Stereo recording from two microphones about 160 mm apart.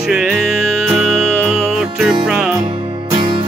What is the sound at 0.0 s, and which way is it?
Music, 5° right (ahead or behind).